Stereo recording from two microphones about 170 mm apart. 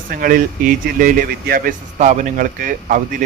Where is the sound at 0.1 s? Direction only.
55° right (ahead or behind).